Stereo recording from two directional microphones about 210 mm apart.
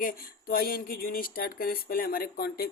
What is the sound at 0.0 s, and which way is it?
Speech, 45° left (ahead or behind).